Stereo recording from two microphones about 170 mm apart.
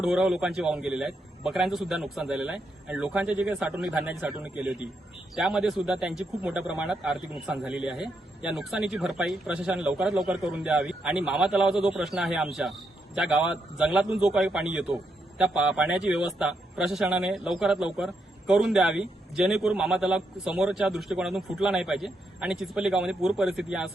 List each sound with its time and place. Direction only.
0.0 s a man's voice: 5° right (ahead or behind)